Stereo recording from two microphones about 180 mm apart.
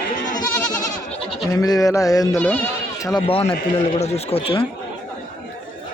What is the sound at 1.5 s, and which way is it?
Speech, 20° left (ahead or behind).